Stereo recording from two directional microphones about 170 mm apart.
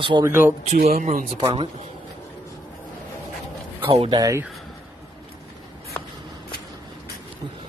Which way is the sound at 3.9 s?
35° right (ahead or behind).